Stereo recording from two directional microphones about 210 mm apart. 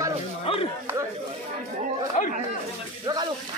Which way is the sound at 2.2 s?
35° left (ahead or behind).